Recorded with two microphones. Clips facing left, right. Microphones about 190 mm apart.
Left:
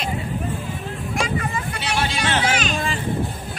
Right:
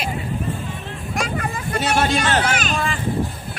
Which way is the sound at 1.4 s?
50° right (ahead or behind).